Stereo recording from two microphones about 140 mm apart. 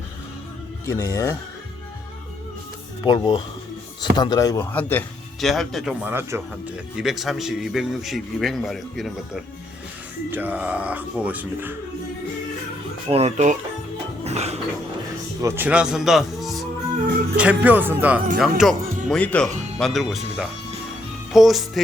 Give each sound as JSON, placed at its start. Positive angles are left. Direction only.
{"t": 0.9, "sound": "speech", "side_deg": 20}
{"t": 3.1, "sound": "speech", "side_deg": 30}
{"t": 4.6, "sound": "a man's voice", "side_deg": 15}
{"t": 5.4, "sound": "speech", "side_deg": 0}
{"t": 6.9, "sound": "a man's voice", "side_deg": -5}
{"t": 10.2, "sound": "speech", "side_deg": -15}
{"t": 13.1, "sound": "speech", "side_deg": -50}
{"t": 14.3, "sound": "music", "side_deg": -50}
{"t": 15.4, "sound": "speech", "side_deg": -15}
{"t": 18.3, "sound": "a man's voice", "side_deg": 0}